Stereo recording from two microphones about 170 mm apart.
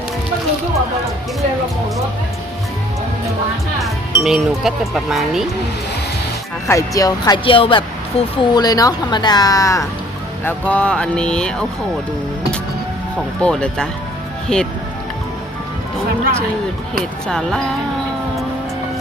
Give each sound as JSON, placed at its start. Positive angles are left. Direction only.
{"t": 3.8, "sound": "speech", "side_deg": 0}
{"t": 6.7, "sound": "speech", "side_deg": 20}
{"t": 10.4, "sound": "speech", "side_deg": 10}
{"t": 13.4, "sound": "speech", "side_deg": 5}
{"t": 17.2, "sound": "speech", "side_deg": 5}